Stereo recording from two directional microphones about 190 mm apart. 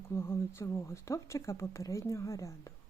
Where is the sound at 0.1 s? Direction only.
15° left (ahead or behind).